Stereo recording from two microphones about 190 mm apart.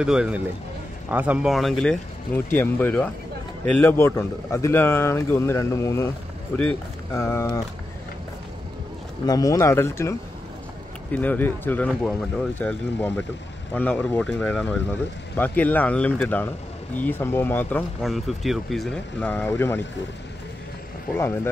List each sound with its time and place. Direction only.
0.0 s a man's voice: 5° right (ahead or behind); by 7.6 s 15° left (ahead or behind)
9.2 s a man's voice: 20° left (ahead or behind)